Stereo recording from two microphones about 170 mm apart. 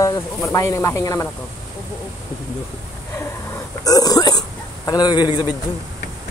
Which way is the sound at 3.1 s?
20° left (ahead or behind).